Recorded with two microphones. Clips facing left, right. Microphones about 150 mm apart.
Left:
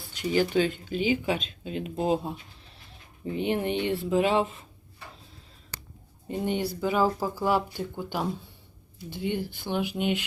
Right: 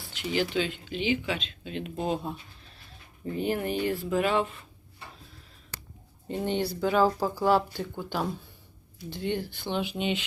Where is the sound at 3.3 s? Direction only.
25° left (ahead or behind).